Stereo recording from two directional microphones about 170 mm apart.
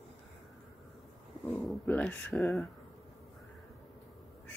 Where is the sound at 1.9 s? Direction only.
10° left (ahead or behind).